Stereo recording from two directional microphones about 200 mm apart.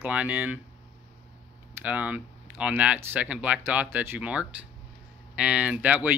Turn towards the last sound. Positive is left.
turn(degrees=-5)  # may be behind; listen again after turning